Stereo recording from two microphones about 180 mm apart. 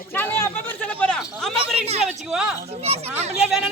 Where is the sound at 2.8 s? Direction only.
35° right (ahead or behind).